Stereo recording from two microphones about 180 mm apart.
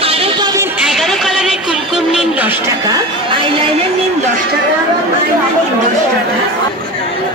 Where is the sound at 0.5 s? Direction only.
15° right (ahead or behind).